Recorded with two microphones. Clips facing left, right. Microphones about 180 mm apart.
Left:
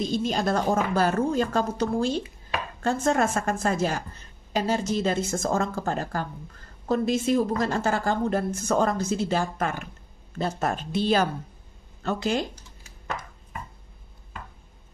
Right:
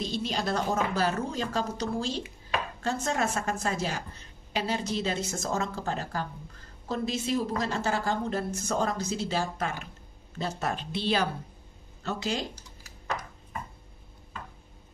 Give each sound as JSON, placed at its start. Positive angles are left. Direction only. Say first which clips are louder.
{"t": 0.0, "sound": "a woman's voice", "louder": "left 5 dB", "side_deg": 45}